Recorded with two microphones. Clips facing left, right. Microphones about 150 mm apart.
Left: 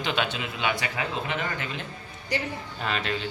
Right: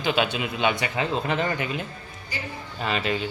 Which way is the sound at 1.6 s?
10° right (ahead or behind).